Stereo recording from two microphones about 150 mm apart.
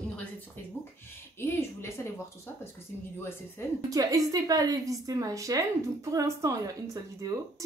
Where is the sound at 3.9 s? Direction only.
25° right (ahead or behind).